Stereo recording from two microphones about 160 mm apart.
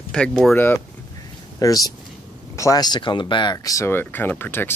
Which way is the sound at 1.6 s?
20° left (ahead or behind).